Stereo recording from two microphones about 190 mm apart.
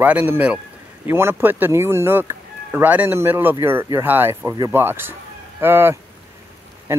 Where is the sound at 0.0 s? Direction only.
10° right (ahead or behind).